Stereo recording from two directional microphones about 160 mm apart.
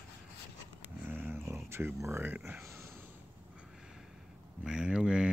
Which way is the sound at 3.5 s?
5° right (ahead or behind).